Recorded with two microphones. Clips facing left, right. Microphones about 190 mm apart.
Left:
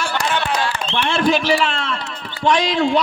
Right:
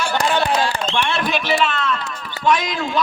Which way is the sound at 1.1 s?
30° left (ahead or behind).